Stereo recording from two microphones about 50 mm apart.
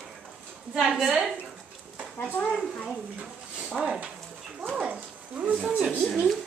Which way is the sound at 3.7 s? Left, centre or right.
Centre.